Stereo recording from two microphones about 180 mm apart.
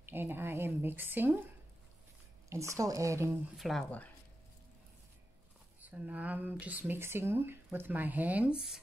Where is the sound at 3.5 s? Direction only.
Centre (ahead or behind).